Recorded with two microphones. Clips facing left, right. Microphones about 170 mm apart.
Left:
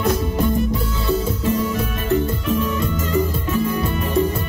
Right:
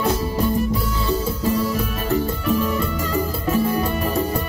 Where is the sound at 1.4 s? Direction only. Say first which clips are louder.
Even; 35° right (ahead or behind).